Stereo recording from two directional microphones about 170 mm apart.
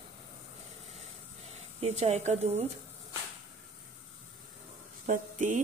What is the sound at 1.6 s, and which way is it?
Speech, 40° right (ahead or behind).